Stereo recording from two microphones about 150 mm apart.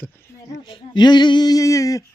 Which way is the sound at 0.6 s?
35° left (ahead or behind).